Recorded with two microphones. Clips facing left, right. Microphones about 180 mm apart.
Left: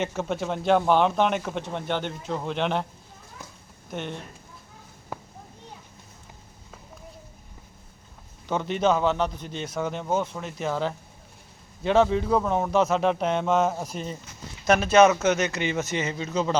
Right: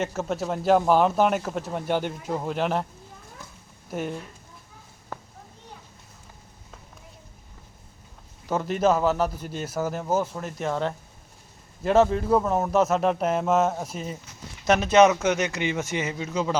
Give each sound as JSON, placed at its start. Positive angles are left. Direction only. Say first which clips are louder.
{"t": 0.0, "sound": "a man's voice", "louder": "even", "side_deg": 0}
{"t": 3.8, "sound": "a man's voice", "louder": "right 3 dB", "side_deg": -5}
{"t": 8.4, "sound": "a man's voice", "louder": "right 1 dB", "side_deg": 0}
{"t": 14.7, "sound": "speech", "louder": "even", "side_deg": -20}